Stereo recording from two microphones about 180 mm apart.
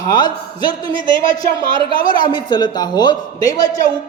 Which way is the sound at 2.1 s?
25° left (ahead or behind).